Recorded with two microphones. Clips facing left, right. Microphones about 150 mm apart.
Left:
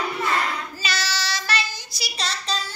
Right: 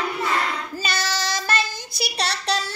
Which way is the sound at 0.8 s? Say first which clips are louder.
Right 3 dB; 50° right (ahead or behind).